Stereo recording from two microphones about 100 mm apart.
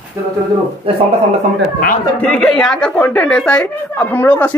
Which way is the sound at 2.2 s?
10° left (ahead or behind).